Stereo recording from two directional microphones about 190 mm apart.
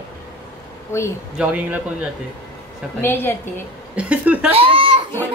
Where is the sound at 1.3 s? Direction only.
5° right (ahead or behind).